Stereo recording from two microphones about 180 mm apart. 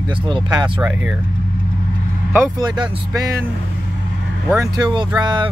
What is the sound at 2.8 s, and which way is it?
Speech, 20° right (ahead or behind).